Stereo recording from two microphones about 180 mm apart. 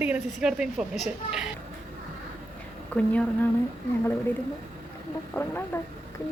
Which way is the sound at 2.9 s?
10° left (ahead or behind).